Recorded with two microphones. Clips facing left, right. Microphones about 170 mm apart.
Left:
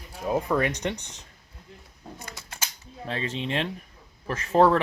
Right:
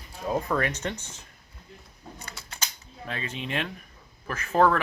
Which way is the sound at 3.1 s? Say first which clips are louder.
Left 3 dB; 30° left (ahead or behind).